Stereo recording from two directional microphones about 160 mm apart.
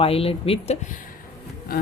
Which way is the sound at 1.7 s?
70° left (ahead or behind).